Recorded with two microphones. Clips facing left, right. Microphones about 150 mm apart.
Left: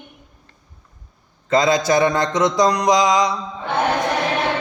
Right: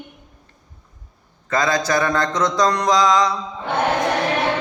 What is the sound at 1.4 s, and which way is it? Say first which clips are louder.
Mantra: left 4 dB; 20° left (ahead or behind).